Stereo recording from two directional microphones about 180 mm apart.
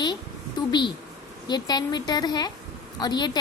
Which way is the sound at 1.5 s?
25° left (ahead or behind).